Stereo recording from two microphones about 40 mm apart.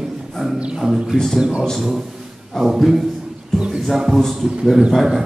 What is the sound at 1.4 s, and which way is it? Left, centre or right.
A man's voice, centre.